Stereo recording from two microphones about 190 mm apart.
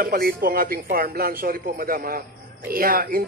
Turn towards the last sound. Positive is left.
turn(degrees=-50)  # may be behind; listen again after turning